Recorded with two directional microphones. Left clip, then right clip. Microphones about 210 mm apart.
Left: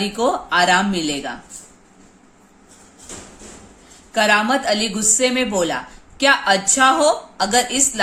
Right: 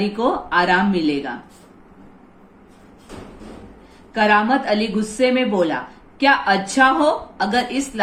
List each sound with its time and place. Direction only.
0.0 s a woman's voice: 60° left (ahead or behind)
4.1 s a woman's voice: 60° left (ahead or behind)